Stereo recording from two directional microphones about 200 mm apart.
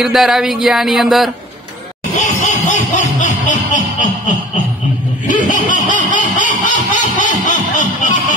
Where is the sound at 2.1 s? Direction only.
40° left (ahead or behind).